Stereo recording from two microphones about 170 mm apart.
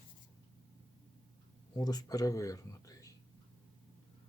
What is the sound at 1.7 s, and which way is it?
Speech, 25° left (ahead or behind).